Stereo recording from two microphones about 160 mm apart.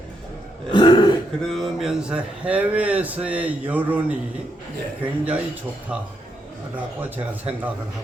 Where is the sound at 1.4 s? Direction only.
Centre (ahead or behind).